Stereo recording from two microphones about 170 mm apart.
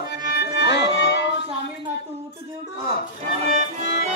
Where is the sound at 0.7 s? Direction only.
90° left.